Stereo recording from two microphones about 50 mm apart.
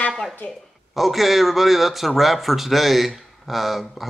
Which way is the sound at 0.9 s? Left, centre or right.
Centre.